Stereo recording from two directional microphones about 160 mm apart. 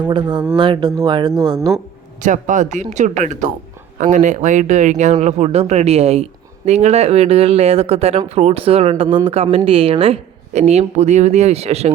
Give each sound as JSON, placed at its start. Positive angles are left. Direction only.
{"t": 0.1, "sound": "speech", "side_deg": -30}
{"t": 2.2, "sound": "speech", "side_deg": -50}